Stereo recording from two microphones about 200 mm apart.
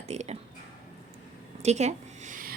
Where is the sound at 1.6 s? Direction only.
35° right (ahead or behind).